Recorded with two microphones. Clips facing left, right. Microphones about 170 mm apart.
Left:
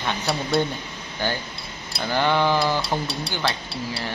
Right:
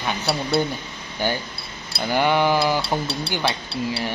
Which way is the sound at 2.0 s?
15° right (ahead or behind).